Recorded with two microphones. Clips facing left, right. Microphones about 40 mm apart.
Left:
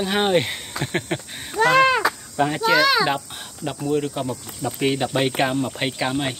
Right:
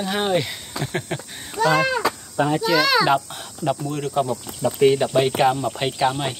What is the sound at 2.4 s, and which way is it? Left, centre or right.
Speech, left.